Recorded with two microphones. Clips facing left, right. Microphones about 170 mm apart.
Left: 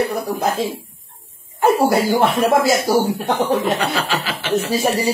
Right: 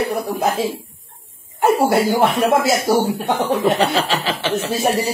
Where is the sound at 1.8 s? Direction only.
Centre (ahead or behind).